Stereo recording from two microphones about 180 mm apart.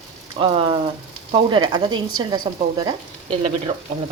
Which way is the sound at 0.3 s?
30° right (ahead or behind).